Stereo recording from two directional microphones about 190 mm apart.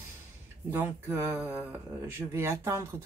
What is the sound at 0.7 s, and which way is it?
Speech, 10° right (ahead or behind).